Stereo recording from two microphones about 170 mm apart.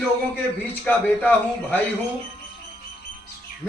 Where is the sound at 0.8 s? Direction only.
10° left (ahead or behind).